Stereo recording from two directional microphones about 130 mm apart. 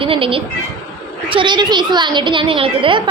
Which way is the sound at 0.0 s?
45° right (ahead or behind).